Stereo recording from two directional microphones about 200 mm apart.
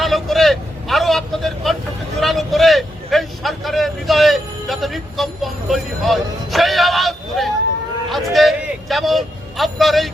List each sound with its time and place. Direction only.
0.0 s vehicle: centre (ahead or behind)